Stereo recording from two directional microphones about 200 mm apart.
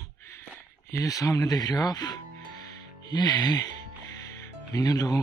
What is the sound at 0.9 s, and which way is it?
Speech, 15° left (ahead or behind).